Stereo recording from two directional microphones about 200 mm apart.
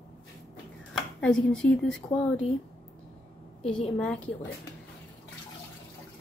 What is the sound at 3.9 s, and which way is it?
Speech, 5° left (ahead or behind).